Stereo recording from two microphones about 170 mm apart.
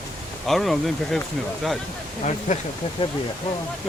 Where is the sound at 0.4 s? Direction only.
Centre (ahead or behind).